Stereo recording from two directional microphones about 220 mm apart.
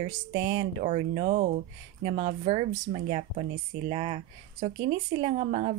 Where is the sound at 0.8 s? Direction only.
30° right (ahead or behind).